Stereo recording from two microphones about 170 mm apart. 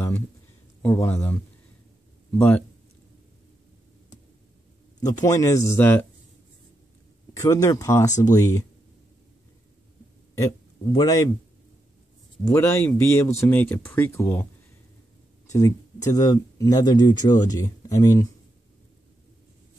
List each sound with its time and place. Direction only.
0.8 s speech: 15° left (ahead or behind)
5.0 s speech: 20° left (ahead or behind)
7.3 s speech: 20° left (ahead or behind)
10.3 s a man's voice: 20° left (ahead or behind)
12.5 s speech: 15° left (ahead or behind)